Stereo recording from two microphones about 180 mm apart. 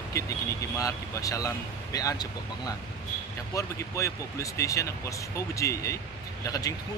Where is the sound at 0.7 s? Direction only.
20° left (ahead or behind).